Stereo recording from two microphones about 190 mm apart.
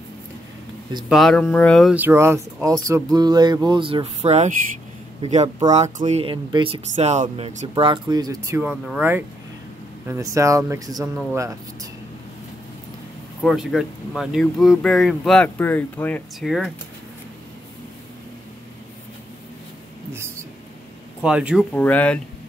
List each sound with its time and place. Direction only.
1.0 s speech: centre (ahead or behind); by 11.9 s 15° right (ahead or behind)
13.4 s speech: centre (ahead or behind)
20.1 s a sound: 15° right (ahead or behind)
21.2 s speech: 5° right (ahead or behind)
21.7 s speech: 10° left (ahead or behind)